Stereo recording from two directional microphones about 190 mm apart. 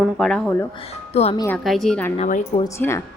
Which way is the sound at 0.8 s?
30° left (ahead or behind).